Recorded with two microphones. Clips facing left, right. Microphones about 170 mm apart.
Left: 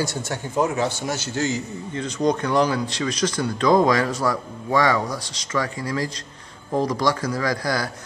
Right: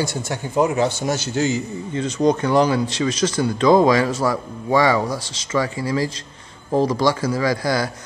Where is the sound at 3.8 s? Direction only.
5° right (ahead or behind).